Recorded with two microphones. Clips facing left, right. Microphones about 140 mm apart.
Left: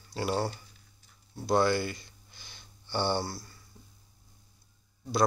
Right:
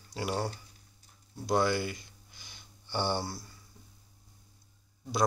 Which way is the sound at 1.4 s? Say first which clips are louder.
Left 2 dB; 10° right (ahead or behind).